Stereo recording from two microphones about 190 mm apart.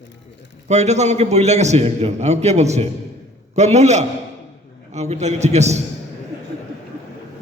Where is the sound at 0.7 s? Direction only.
35° right (ahead or behind).